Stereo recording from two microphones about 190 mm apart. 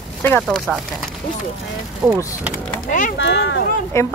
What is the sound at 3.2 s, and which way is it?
Speech, 65° left (ahead or behind).